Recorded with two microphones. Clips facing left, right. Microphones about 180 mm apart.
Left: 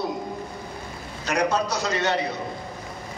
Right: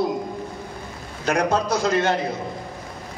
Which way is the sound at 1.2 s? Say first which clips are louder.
Right 2 dB; 55° right (ahead or behind).